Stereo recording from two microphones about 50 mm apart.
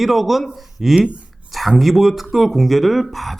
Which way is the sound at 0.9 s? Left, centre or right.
Right.